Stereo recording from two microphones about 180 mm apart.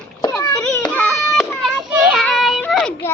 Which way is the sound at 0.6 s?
10° left (ahead or behind).